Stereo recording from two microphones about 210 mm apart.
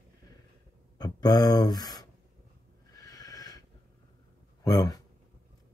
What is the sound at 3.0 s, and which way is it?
Neigh, 15° left (ahead or behind).